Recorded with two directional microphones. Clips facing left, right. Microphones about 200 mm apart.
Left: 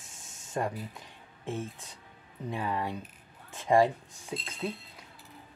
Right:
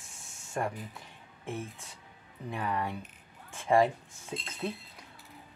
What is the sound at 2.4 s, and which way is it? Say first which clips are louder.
Speech: left 1 dB; 20° left (ahead or behind).